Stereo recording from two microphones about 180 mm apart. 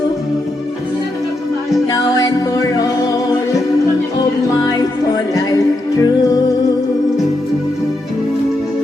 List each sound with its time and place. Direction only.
1.9 s music: 20° left (ahead or behind)
5.3 s music: 20° left (ahead or behind)